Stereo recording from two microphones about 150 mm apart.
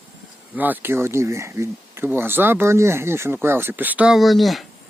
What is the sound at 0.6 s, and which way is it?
Speech, 10° right (ahead or behind).